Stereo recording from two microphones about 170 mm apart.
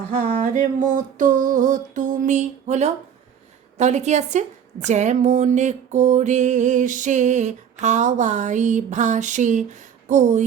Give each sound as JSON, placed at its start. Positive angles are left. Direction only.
{"t": 0.1, "sound": "a woman's voice", "side_deg": -45}